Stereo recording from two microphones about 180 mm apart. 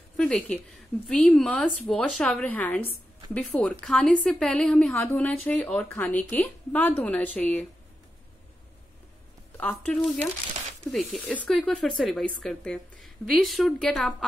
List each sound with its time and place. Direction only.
0.2 s speech: 5° left (ahead or behind)
9.6 s speech: 10° left (ahead or behind)